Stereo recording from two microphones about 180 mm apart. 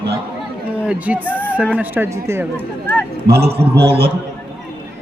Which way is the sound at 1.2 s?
10° left (ahead or behind).